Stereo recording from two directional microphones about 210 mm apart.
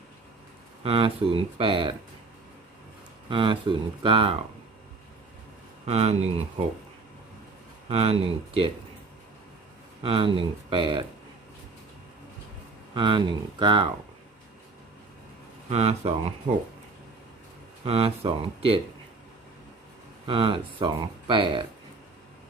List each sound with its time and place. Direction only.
0.8 s speech: 25° right (ahead or behind)
3.2 s speech: 25° right (ahead or behind)
5.8 s speech: 30° right (ahead or behind)
7.9 s speech: 25° right (ahead or behind)
10.0 s speech: 25° right (ahead or behind)
12.9 s speech: 20° right (ahead or behind)
15.7 s speech: 30° right (ahead or behind)
17.8 s speech: 25° right (ahead or behind)
20.2 s speech: 25° right (ahead or behind)